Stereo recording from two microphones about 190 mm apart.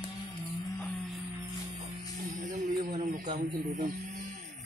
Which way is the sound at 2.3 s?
40° right (ahead or behind).